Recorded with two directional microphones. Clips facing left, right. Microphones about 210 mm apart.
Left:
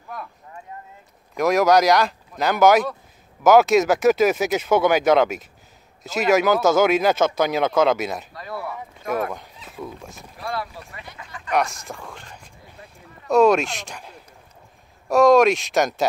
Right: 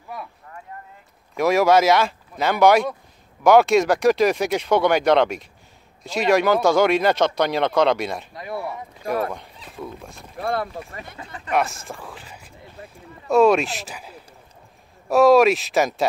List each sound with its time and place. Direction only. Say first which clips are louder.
0.1 s speech: even; 5° right (ahead or behind)
1.3 s speech: even; centre (ahead or behind)
8.3 s speech: right 2 dB; 20° right (ahead or behind)
9.3 s speech: even; centre (ahead or behind)
10.3 s speech: right 5 dB; 55° right (ahead or behind)
11.2 s speech: right 4 dB; 35° right (ahead or behind)
11.5 s speech: even; centre (ahead or behind)